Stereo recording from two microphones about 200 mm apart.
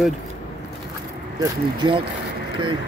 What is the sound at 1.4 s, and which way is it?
Speech, 25° right (ahead or behind).